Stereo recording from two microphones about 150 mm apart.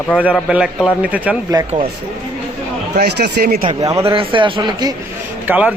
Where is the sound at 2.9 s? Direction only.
90° right.